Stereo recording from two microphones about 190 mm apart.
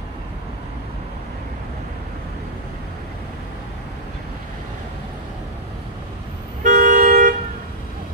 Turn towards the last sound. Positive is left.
turn(degrees=-45)  # may be behind; listen again after turning